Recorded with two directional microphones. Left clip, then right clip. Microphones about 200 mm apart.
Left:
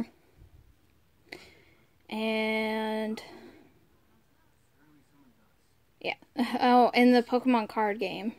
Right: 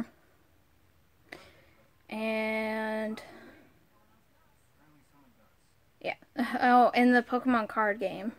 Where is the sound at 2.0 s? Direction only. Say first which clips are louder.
Left 2 dB; 5° left (ahead or behind).